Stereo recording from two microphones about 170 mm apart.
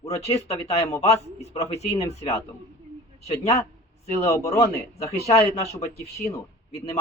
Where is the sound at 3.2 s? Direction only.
40° left (ahead or behind).